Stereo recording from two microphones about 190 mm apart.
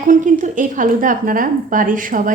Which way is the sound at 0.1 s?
40° right (ahead or behind).